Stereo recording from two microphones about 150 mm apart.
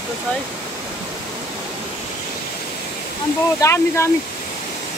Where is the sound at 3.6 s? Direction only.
20° left (ahead or behind).